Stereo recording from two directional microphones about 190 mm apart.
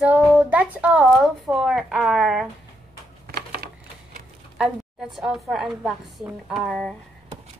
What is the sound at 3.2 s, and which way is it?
Typewriter, 55° right (ahead or behind).